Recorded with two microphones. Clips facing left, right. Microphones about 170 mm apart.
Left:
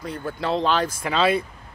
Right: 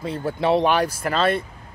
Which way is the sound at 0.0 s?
25° right (ahead or behind).